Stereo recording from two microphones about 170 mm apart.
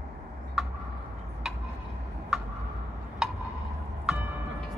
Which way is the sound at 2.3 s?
Centre (ahead or behind).